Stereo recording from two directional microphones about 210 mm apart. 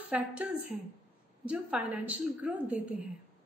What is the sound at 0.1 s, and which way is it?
A woman's voice, 5° right (ahead or behind).